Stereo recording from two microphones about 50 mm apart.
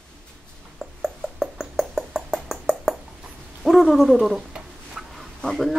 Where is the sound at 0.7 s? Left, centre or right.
Centre.